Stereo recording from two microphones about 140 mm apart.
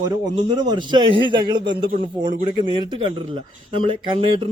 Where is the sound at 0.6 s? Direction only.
35° right (ahead or behind).